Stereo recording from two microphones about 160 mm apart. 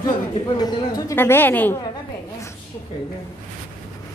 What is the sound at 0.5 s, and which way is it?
A woman's voice, 25° left (ahead or behind).